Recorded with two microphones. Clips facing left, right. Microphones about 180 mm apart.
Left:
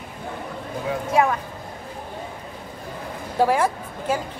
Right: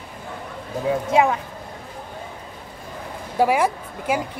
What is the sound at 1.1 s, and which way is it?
Speech, 20° right (ahead or behind).